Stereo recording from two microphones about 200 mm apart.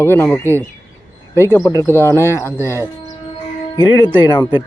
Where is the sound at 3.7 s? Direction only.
20° left (ahead or behind).